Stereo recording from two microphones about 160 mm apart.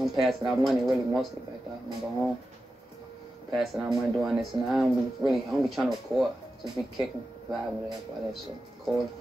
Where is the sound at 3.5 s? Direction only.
Centre (ahead or behind).